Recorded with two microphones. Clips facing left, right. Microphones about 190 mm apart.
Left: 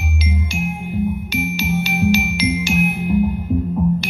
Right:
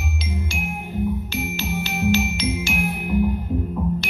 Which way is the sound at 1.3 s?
15° left (ahead or behind).